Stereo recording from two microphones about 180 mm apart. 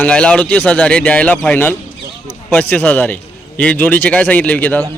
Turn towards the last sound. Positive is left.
turn(degrees=10)  # may be behind; listen again after turning